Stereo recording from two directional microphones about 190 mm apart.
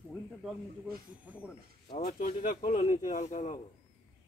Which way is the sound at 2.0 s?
50° left (ahead or behind).